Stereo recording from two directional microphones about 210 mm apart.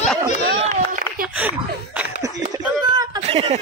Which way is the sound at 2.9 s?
20° right (ahead or behind).